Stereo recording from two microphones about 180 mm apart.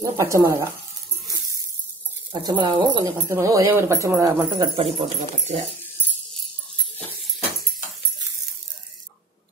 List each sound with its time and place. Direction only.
0.0 s speech: 15° right (ahead or behind)
2.3 s speech: 25° right (ahead or behind)
4.9 s speech: 35° right (ahead or behind)